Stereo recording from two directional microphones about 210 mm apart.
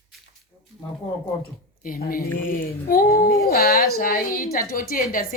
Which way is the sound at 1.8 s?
45° left (ahead or behind).